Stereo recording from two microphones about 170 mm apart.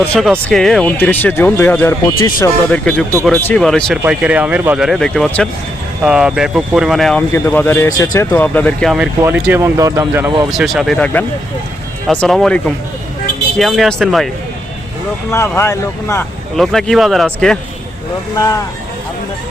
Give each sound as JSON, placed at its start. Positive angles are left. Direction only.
{"t": 0.0, "sound": "speech", "side_deg": 5}
{"t": 2.6, "sound": "speech", "side_deg": 5}
{"t": 9.2, "sound": "speech", "side_deg": -15}
{"t": 10.5, "sound": "speech", "side_deg": -5}
{"t": 15.3, "sound": "speech", "side_deg": 15}
{"t": 16.6, "sound": "speech", "side_deg": 0}
{"t": 18.3, "sound": "speech", "side_deg": 20}